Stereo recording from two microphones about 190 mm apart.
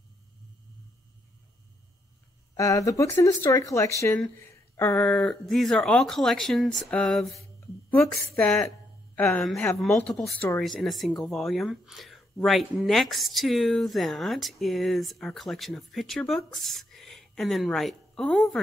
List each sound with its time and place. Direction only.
2.5 s speech: 15° left (ahead or behind); by 7.3 s centre (ahead or behind)
7.3 s a sound: 15° left (ahead or behind)
8.4 s speech: 5° left (ahead or behind)